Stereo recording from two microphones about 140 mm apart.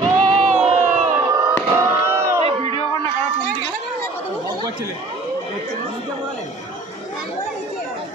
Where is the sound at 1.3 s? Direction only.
20° right (ahead or behind).